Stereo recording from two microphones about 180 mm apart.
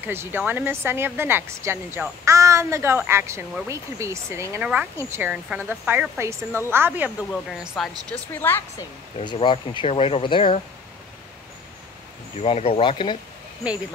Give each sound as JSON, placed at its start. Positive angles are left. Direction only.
{"t": 0.0, "sound": "speech", "side_deg": -10}
{"t": 8.1, "sound": "speech", "side_deg": 10}
{"t": 9.2, "sound": "speech", "side_deg": 25}
{"t": 12.4, "sound": "speech", "side_deg": 35}